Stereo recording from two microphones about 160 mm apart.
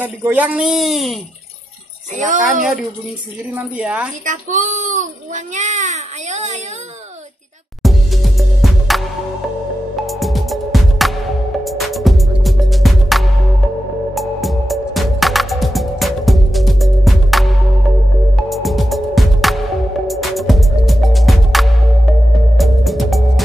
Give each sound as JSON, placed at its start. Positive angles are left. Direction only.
{"t": 0.0, "sound": "a woman's voice", "side_deg": -10}
{"t": 2.1, "sound": "a child's voice", "side_deg": -55}
{"t": 3.5, "sound": "speech", "side_deg": -5}
{"t": 4.2, "sound": "a child's voice", "side_deg": -55}
{"t": 7.8, "sound": "music", "side_deg": 0}